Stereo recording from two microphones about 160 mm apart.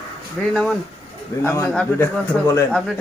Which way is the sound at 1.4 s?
15° left (ahead or behind).